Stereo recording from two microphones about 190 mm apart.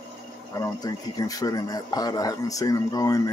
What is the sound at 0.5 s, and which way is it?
Speech, 20° left (ahead or behind).